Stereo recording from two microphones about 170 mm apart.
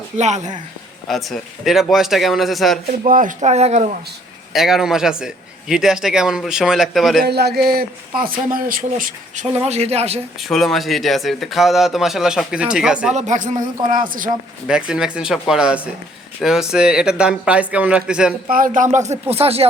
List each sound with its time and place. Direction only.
0.2 s speech: 45° right (ahead or behind)
1.0 s a man's voice: centre (ahead or behind)
3.0 s speech: 50° right (ahead or behind)
4.5 s a man's voice: centre (ahead or behind)
7.3 s a man's voice: 70° right (ahead or behind); by 10.2 s 40° right (ahead or behind)
10.5 s a man's voice: centre (ahead or behind)
13.1 s speech: 45° right (ahead or behind)
14.7 s a man's voice: 5° right (ahead or behind)
18.4 s speech: 55° right (ahead or behind)
19.3 s speech: 35° right (ahead or behind)